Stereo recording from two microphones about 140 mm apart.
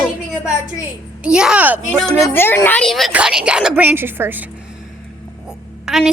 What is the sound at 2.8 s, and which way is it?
A woman's voice, centre (ahead or behind).